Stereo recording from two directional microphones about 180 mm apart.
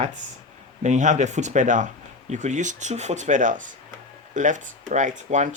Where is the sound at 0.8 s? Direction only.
40° right (ahead or behind).